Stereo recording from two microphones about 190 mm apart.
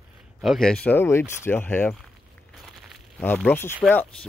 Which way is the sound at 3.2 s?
10° left (ahead or behind).